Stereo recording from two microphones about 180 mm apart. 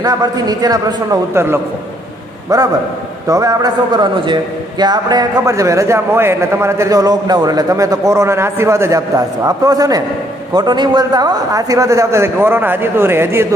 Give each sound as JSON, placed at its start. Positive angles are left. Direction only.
{"t": 0.0, "sound": "a man's voice", "side_deg": -20}